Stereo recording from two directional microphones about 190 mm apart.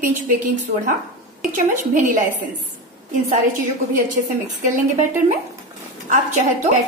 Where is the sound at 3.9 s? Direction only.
45° right (ahead or behind).